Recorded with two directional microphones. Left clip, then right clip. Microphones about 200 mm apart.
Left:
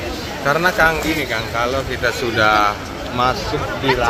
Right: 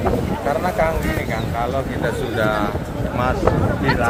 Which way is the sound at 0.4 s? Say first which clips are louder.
Left 6 dB; 40° left (ahead or behind).